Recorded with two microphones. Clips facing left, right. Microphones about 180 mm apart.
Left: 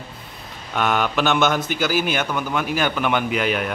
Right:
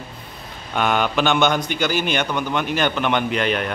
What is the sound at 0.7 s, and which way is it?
A man's voice, centre (ahead or behind).